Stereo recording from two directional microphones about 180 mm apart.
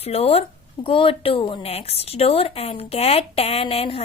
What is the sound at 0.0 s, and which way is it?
Speech, 35° left (ahead or behind).